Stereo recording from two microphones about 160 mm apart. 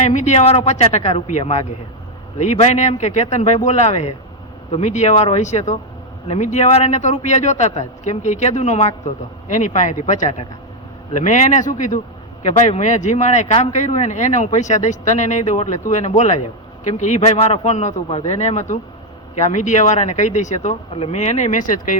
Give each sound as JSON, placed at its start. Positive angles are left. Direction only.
{"t": 0.0, "sound": "a man's voice", "side_deg": 45}